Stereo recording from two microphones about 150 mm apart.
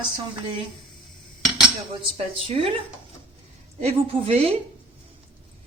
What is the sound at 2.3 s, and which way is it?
Speech, 40° right (ahead or behind).